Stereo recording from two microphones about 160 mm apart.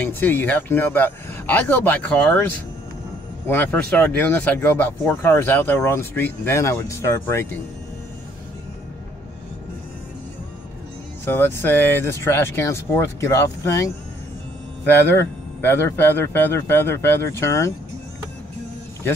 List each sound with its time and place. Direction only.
0.0 s speech: 10° left (ahead or behind)
3.4 s speech: 15° left (ahead or behind)
11.2 s speech: 15° left (ahead or behind)
15.1 s speech: 15° left (ahead or behind)